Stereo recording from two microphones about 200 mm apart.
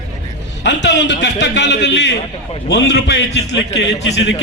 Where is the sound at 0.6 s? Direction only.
60° left (ahead or behind).